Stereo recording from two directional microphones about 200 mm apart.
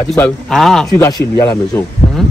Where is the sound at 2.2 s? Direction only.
Centre (ahead or behind).